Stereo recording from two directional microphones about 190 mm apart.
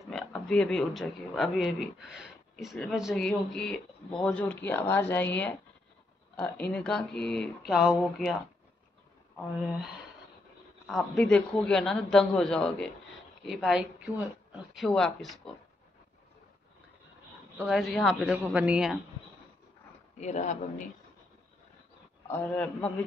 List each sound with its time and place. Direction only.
0.1 s speech: 5° left (ahead or behind)
10.9 s speech: centre (ahead or behind)
17.6 s speech: centre (ahead or behind)
20.2 s a man's voice: 35° left (ahead or behind)
22.3 s a man's voice: 10° left (ahead or behind)